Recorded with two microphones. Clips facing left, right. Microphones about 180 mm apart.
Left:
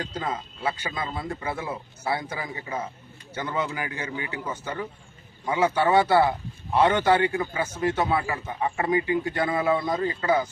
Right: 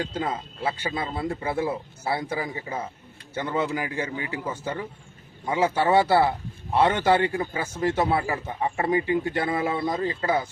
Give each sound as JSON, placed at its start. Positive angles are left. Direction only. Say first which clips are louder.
{"t": 0.0, "sound": "a man's voice", "louder": "right 2 dB", "side_deg": -30}